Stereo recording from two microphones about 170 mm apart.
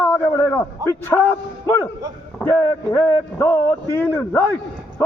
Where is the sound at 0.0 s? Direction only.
15° left (ahead or behind).